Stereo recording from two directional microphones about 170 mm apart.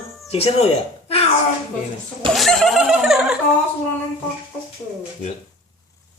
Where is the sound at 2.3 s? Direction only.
Centre (ahead or behind).